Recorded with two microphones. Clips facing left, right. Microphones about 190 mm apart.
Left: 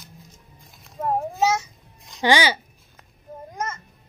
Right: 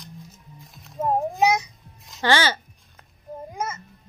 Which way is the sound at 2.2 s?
15° left (ahead or behind).